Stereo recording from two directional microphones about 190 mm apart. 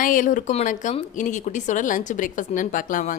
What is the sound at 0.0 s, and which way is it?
A woman's voice, 45° left (ahead or behind).